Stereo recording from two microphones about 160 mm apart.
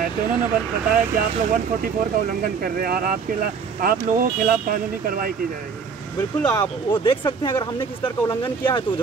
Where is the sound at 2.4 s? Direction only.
70° right (ahead or behind).